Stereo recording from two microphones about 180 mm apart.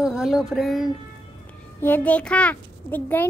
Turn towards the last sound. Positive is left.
turn(degrees=10)  # may be behind; listen again after turning